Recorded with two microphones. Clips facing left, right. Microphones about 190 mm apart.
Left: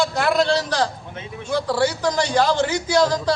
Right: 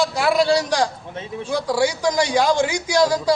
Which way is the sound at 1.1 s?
35° right (ahead or behind).